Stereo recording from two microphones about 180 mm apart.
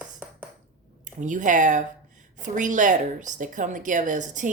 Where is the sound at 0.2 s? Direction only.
10° right (ahead or behind).